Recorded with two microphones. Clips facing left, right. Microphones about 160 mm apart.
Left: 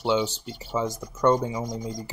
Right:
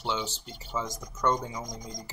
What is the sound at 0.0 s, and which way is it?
Speech, 10° left (ahead or behind).